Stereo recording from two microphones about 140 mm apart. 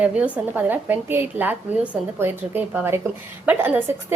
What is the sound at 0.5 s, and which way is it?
A woman's voice, 15° right (ahead or behind).